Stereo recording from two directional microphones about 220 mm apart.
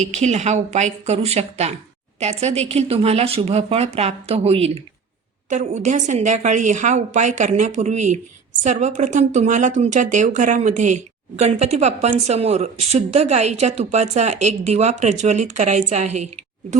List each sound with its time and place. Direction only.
0.0 s speech: 30° right (ahead or behind)